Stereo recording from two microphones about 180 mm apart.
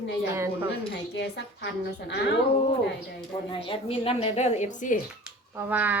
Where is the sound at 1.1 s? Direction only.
70° left (ahead or behind).